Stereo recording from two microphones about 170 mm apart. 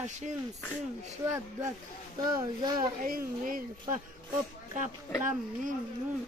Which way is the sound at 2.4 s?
25° right (ahead or behind).